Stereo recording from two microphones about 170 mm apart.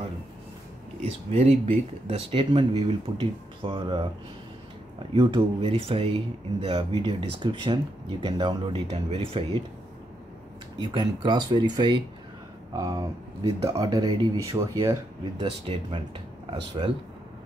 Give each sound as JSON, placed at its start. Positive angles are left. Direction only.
{"t": 1.0, "sound": "speech", "side_deg": -35}
{"t": 10.8, "sound": "speech", "side_deg": -30}